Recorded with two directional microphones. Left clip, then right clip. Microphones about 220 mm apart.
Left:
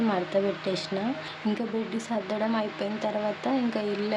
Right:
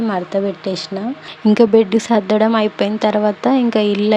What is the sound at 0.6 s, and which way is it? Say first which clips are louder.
Speech: right 8 dB; 25° right (ahead or behind).